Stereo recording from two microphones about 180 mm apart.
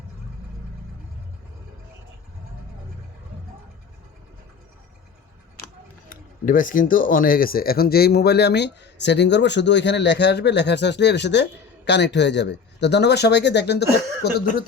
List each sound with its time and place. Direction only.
6.1 s speech: 50° left (ahead or behind)